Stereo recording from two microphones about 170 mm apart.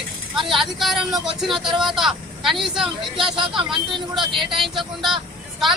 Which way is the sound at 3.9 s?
30° right (ahead or behind).